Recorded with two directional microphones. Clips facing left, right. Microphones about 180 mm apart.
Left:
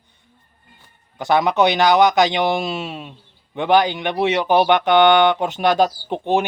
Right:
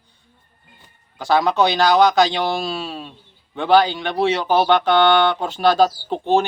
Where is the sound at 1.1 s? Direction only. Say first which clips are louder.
Even; 20° left (ahead or behind).